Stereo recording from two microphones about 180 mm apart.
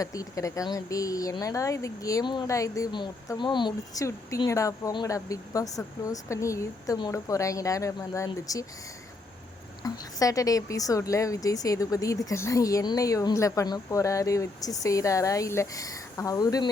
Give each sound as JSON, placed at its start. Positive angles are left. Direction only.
{"t": 0.0, "sound": "speech", "side_deg": 20}
{"t": 9.8, "sound": "speech", "side_deg": 20}